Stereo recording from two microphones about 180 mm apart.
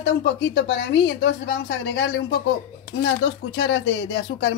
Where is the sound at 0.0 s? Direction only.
90° left.